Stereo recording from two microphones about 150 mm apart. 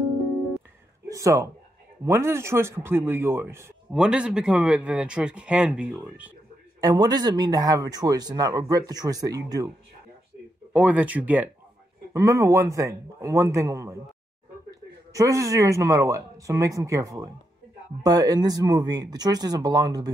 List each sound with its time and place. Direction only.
1.0 s speech: 20° right (ahead or behind)
3.9 s speech: 5° right (ahead or behind)
6.8 s speech: 25° right (ahead or behind)
10.7 s speech: 10° right (ahead or behind)
15.1 s speech: 20° right (ahead or behind)